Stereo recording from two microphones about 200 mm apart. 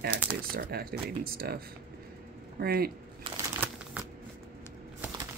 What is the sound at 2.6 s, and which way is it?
Speech, 50° right (ahead or behind).